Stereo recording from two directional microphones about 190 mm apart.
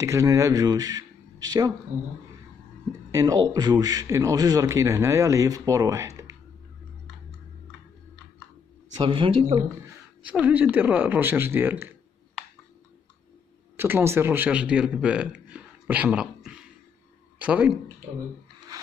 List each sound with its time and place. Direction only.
0.0 s a man's voice: 15° right (ahead or behind)
3.1 s a man's voice: 20° right (ahead or behind)
8.9 s speech: 25° right (ahead or behind)
10.2 s a man's voice: 5° right (ahead or behind)
13.7 s speech: 10° right (ahead or behind)